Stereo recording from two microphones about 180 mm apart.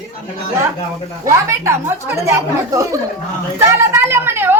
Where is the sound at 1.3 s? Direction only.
15° right (ahead or behind).